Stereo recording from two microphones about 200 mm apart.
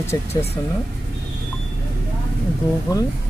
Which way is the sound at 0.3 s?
30° left (ahead or behind).